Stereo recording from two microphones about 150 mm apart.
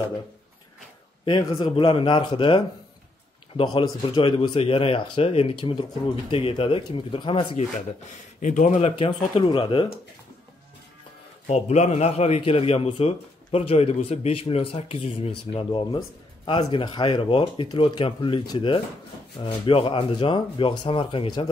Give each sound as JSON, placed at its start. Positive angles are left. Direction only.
{"t": 1.2, "sound": "speech", "side_deg": 30}
{"t": 8.4, "sound": "speech", "side_deg": 55}
{"t": 11.4, "sound": "a man's voice", "side_deg": 45}